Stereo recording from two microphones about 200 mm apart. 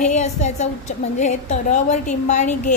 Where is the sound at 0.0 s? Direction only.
35° left (ahead or behind).